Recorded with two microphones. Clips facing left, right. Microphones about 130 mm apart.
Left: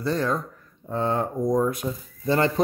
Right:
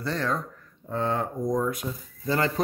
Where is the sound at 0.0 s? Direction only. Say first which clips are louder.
Left 4 dB; 15° left (ahead or behind).